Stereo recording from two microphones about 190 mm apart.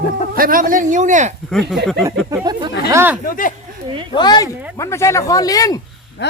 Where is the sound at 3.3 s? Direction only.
45° left (ahead or behind).